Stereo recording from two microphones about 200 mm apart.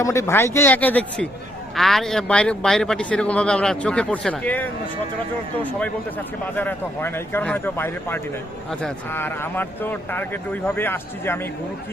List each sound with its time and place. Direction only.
0.0 s a man's voice: 15° left (ahead or behind)
6.6 s speech: 10° left (ahead or behind)